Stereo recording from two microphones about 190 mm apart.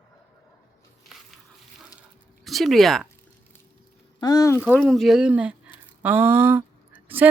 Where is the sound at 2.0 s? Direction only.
Centre (ahead or behind).